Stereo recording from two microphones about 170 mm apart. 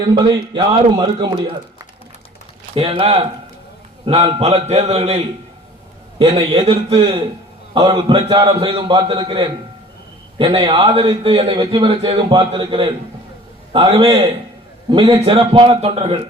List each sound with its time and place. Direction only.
0.5 s a man's voice: 30° right (ahead or behind)
2.7 s a man's voice: 35° right (ahead or behind)